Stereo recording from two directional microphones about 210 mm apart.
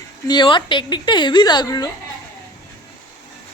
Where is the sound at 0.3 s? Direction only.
20° left (ahead or behind).